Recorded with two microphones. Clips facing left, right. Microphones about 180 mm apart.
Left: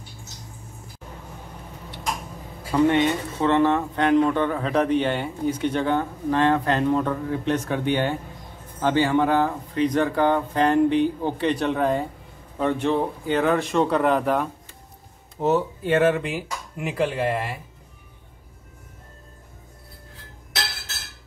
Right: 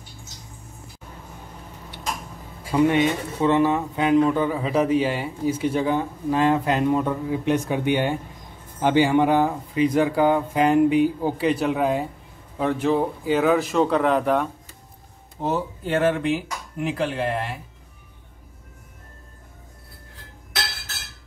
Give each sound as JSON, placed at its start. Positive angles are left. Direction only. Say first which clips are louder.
{"t": 2.7, "sound": "speech", "louder": "even", "side_deg": -15}